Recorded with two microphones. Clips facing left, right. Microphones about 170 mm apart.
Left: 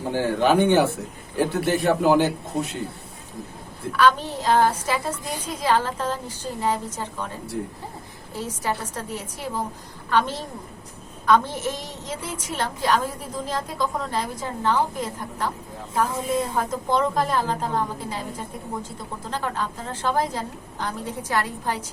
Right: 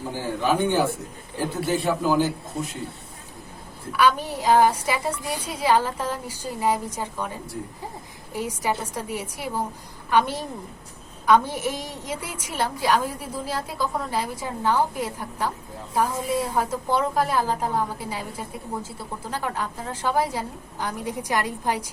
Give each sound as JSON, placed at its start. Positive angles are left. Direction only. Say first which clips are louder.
{"t": 0.1, "sound": "a man's voice", "louder": "left 5 dB", "side_deg": 70}
{"t": 3.9, "sound": "a woman's voice", "louder": "left 1 dB", "side_deg": -10}
{"t": 8.3, "sound": "a woman's voice", "louder": "right 1 dB", "side_deg": -10}